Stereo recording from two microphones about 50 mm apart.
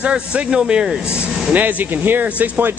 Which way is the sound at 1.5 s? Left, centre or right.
Right.